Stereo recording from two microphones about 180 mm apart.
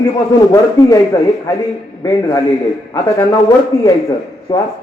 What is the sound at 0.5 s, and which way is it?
A man's voice, 20° left (ahead or behind).